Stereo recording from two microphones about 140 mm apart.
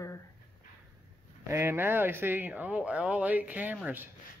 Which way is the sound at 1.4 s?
20° right (ahead or behind).